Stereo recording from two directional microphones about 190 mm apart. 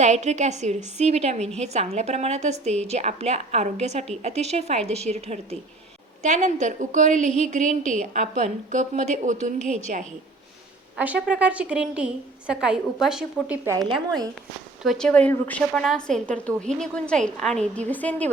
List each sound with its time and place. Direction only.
0.0 s a woman's voice: 35° right (ahead or behind)
10.9 s a woman's voice: 5° right (ahead or behind)
13.7 s a woman's voice: 20° right (ahead or behind)
14.8 s a woman's voice: 5° left (ahead or behind)